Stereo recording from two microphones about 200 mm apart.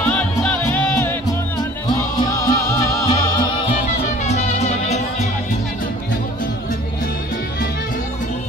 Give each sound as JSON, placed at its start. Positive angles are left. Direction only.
{"t": 0.1, "sound": "music", "side_deg": 5}
{"t": 4.3, "sound": "music", "side_deg": 35}